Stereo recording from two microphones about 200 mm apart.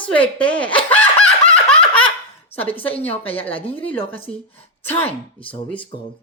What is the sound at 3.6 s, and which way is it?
Speech, 25° left (ahead or behind).